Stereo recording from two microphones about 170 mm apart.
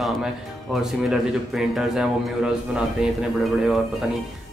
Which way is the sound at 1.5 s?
Centre (ahead or behind).